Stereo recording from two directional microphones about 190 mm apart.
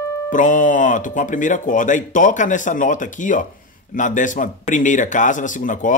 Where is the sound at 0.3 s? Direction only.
45° left (ahead or behind).